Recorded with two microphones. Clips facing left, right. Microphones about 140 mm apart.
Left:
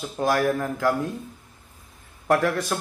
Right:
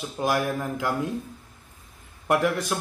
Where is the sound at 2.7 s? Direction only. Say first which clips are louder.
Left 1 dB; 10° right (ahead or behind).